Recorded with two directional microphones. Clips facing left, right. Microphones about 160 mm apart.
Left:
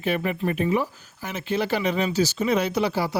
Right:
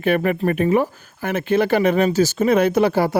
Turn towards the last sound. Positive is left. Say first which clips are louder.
# right 7 dB
turn(degrees=-55)  # may be behind; listen again after turning